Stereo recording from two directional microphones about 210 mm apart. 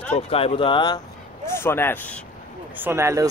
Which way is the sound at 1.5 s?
10° left (ahead or behind).